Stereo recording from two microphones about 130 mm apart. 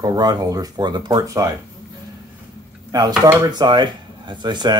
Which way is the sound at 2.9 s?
30° right (ahead or behind).